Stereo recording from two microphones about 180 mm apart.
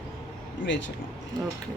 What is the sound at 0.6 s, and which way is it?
Speech, 90° left.